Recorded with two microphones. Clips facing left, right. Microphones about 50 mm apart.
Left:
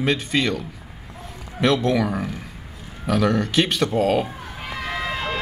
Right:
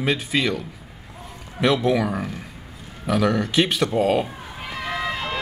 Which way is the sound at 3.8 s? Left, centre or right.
Centre.